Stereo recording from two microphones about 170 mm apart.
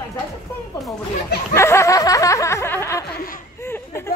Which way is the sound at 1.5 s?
15° left (ahead or behind).